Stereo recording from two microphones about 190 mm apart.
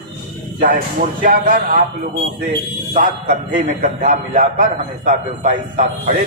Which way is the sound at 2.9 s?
40° right (ahead or behind).